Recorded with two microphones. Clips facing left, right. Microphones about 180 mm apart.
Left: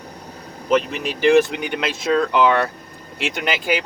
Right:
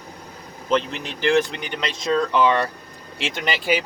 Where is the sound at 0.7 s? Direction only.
10° left (ahead or behind).